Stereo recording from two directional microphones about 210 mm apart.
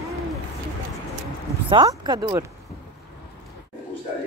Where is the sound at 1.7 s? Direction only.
20° right (ahead or behind).